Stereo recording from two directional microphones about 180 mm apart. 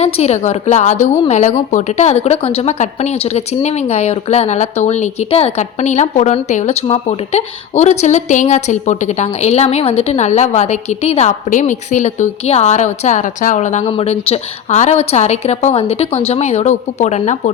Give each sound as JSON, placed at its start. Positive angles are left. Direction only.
{"t": 0.0, "sound": "a woman's voice", "side_deg": 40}